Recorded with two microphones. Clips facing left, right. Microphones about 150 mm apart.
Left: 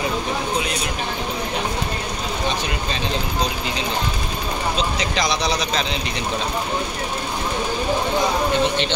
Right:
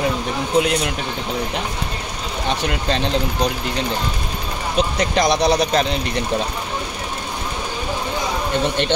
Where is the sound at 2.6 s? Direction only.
65° right (ahead or behind).